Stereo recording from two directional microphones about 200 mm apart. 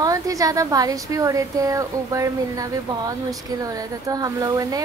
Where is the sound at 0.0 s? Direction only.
15° right (ahead or behind).